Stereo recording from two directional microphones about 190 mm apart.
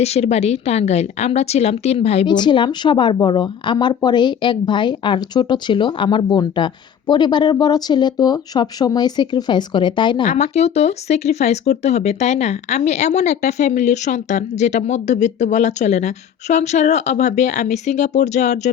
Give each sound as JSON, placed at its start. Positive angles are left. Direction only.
{"t": 0.0, "sound": "a woman's voice", "side_deg": 35}
{"t": 10.2, "sound": "speech", "side_deg": 35}